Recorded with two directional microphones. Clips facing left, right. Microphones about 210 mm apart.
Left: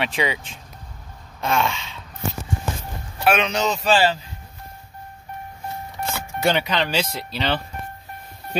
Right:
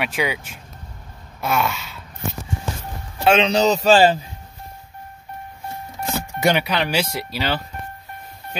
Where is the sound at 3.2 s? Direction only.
30° right (ahead or behind).